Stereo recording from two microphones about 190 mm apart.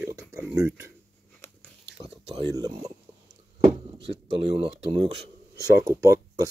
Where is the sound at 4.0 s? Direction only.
30° right (ahead or behind).